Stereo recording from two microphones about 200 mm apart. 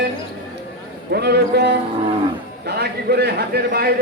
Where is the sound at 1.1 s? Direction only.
55° right (ahead or behind).